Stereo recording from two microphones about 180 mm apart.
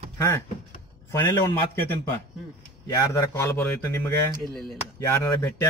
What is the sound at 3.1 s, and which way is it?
A man's voice, 10° left (ahead or behind).